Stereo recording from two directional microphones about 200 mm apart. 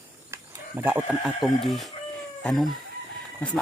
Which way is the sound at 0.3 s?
10° right (ahead or behind).